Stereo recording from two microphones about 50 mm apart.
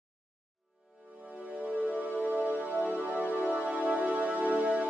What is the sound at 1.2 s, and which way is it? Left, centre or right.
Music, right.